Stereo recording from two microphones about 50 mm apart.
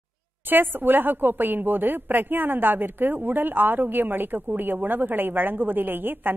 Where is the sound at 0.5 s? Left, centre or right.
Right.